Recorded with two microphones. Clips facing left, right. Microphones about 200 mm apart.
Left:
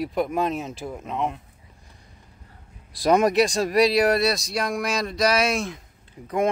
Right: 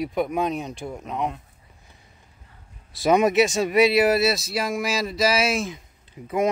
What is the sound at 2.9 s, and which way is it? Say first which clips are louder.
Speech: even; centre (ahead or behind).